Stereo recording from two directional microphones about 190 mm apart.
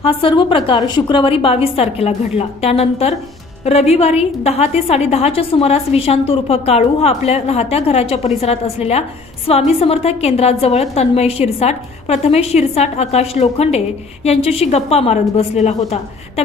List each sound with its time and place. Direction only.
0.0 s a woman's voice: 30° left (ahead or behind)